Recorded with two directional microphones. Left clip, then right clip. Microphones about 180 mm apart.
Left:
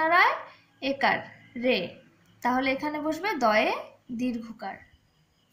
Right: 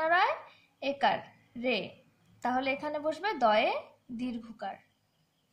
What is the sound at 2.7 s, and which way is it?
A woman's voice, 50° right (ahead or behind).